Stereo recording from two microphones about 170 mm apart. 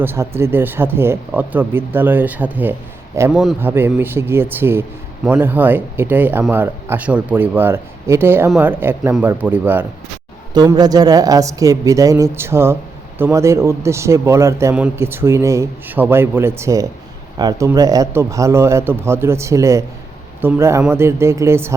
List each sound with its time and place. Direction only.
0.0 s a man's voice: 15° right (ahead or behind)
10.5 s a woman's voice: 25° right (ahead or behind)